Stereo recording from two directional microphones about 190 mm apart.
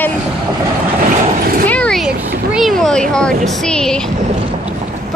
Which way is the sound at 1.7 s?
5° left (ahead or behind).